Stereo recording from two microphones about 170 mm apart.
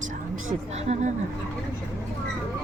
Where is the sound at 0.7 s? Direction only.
40° right (ahead or behind).